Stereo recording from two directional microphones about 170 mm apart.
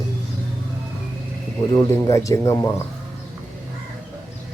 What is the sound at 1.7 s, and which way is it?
Speech, 20° left (ahead or behind).